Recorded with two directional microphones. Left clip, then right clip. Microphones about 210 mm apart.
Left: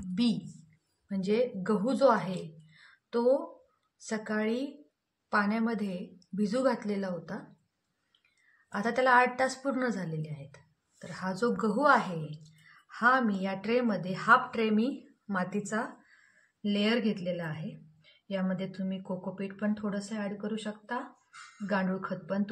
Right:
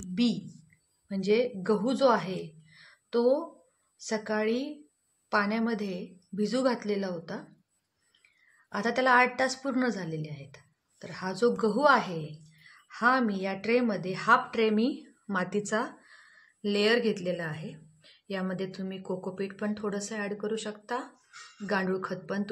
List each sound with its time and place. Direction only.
0.0 s a sound: 25° right (ahead or behind)
1.0 s a woman's voice: 30° right (ahead or behind)
8.7 s a woman's voice: 30° right (ahead or behind)
16.6 s a woman's voice: 55° right (ahead or behind)